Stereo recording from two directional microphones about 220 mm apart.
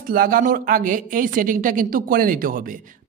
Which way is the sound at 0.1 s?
40° right (ahead or behind).